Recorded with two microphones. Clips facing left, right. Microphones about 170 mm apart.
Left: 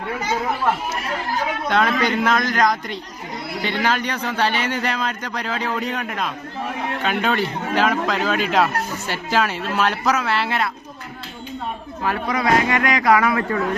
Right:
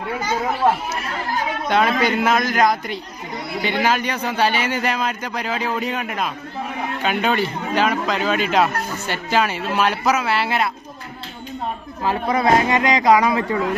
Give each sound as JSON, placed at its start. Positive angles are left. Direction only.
{"t": 1.6, "sound": "a man's voice", "side_deg": -5}
{"t": 12.0, "sound": "speech", "side_deg": -25}